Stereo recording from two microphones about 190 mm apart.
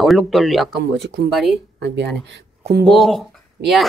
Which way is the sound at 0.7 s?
65° right (ahead or behind).